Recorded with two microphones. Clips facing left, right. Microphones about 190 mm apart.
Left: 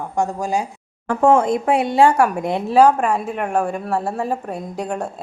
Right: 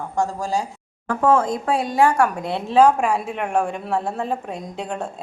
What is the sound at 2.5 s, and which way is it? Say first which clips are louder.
Speech: left 1 dB; 10° left (ahead or behind).